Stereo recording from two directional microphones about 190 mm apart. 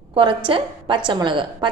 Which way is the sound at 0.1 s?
25° right (ahead or behind).